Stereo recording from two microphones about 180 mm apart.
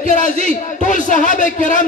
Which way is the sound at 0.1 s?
45° left (ahead or behind).